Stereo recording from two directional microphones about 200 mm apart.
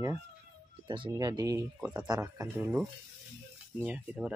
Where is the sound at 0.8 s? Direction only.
25° right (ahead or behind).